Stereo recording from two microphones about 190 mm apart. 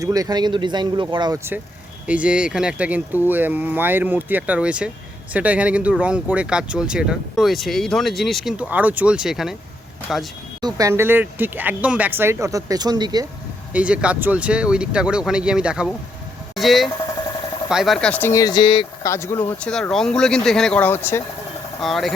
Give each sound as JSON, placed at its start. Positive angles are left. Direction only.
{"t": 0.0, "sound": "speech", "side_deg": -20}
{"t": 2.0, "sound": "speech", "side_deg": -5}
{"t": 10.8, "sound": "speech", "side_deg": -15}
{"t": 13.7, "sound": "speech", "side_deg": -5}
{"t": 19.1, "sound": "speech", "side_deg": 15}
{"t": 21.8, "sound": "speech", "side_deg": 0}